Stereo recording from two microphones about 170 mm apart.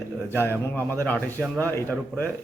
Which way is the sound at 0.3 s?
15° left (ahead or behind).